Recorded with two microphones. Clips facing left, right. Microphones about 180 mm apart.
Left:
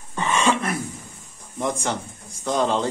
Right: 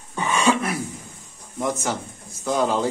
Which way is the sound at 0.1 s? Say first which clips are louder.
Right 1 dB; 10° right (ahead or behind).